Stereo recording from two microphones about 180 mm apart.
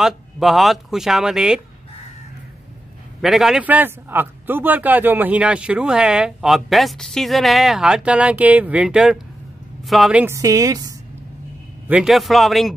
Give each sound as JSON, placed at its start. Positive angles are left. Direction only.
{"t": 0.0, "sound": "a man's voice", "side_deg": 0}
{"t": 3.2, "sound": "a man's voice", "side_deg": 0}
{"t": 11.9, "sound": "a man's voice", "side_deg": 0}